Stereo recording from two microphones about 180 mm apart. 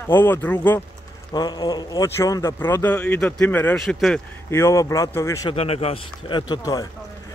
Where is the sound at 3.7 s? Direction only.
Centre (ahead or behind).